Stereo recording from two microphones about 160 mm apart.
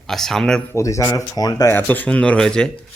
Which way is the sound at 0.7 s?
20° left (ahead or behind).